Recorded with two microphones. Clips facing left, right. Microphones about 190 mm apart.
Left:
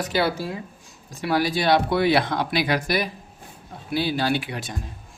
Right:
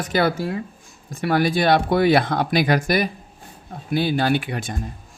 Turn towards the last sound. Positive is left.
turn(degrees=-50)  # may be behind; listen again after turning